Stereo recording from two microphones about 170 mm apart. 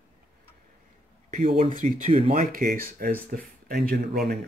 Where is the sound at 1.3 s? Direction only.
50° right (ahead or behind).